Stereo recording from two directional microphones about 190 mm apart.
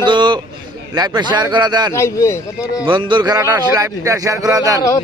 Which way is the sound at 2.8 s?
25° right (ahead or behind).